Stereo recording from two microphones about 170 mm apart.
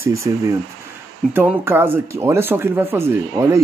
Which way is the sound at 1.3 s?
10° right (ahead or behind).